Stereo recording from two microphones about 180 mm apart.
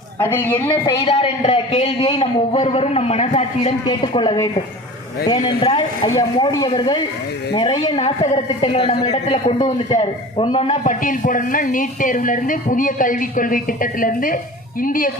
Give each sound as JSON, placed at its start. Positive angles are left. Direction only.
{"t": 0.2, "sound": "a woman's voice", "side_deg": 10}
{"t": 1.0, "sound": "a man's voice", "side_deg": 35}